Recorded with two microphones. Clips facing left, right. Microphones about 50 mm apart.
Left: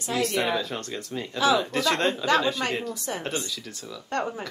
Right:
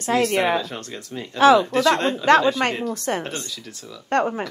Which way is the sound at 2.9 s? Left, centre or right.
Right.